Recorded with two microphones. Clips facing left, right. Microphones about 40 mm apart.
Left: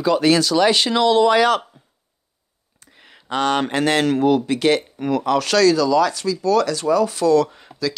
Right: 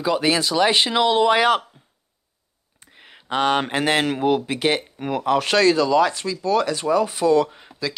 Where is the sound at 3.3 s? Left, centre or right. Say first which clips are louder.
Left 1 dB; centre.